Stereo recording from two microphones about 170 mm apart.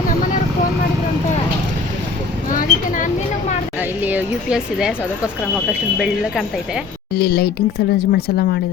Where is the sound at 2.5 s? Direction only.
50° left (ahead or behind).